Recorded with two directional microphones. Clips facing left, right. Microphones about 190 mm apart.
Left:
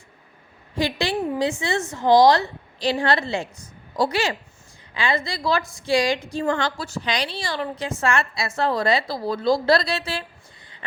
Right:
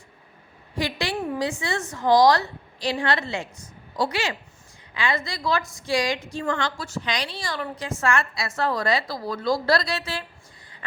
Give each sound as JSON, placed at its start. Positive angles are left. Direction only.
{"t": 0.8, "sound": "a woman's voice", "side_deg": 25}